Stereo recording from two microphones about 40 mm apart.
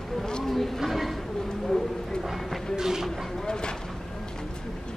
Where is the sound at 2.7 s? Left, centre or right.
Centre.